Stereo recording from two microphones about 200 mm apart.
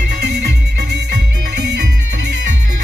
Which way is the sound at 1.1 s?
55° right (ahead or behind).